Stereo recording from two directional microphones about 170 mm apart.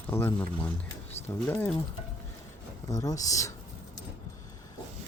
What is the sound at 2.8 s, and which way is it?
Speech, 20° left (ahead or behind).